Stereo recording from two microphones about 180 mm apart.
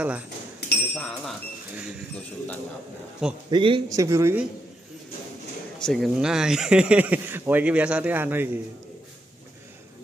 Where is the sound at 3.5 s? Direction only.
25° right (ahead or behind).